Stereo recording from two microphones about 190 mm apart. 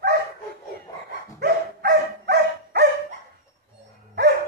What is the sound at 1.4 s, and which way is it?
Dog, 60° right (ahead or behind).